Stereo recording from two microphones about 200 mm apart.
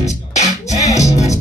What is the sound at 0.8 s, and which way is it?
Music, 15° left (ahead or behind).